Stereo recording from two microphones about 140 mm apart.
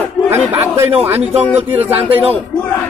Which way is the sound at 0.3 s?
15° right (ahead or behind).